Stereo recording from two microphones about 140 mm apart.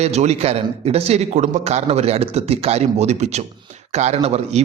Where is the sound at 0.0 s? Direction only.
50° right (ahead or behind).